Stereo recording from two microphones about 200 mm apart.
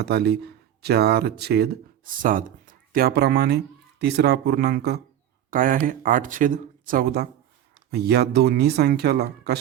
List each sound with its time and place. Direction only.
0.0 s speech: 55° right (ahead or behind)